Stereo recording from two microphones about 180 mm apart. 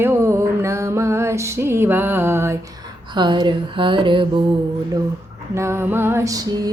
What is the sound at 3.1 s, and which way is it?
Speech, 25° right (ahead or behind).